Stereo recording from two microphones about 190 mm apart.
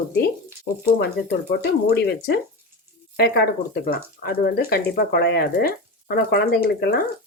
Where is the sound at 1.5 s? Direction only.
55° left (ahead or behind).